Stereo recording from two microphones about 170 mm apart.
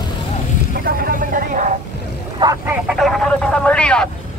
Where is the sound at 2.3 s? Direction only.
25° right (ahead or behind).